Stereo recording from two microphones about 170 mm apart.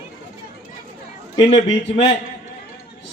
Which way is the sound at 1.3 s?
30° left (ahead or behind).